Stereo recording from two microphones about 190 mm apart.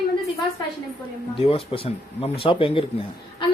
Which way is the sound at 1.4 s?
30° left (ahead or behind).